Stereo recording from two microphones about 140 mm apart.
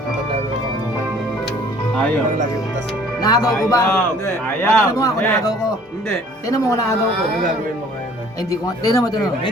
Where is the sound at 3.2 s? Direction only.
25° left (ahead or behind).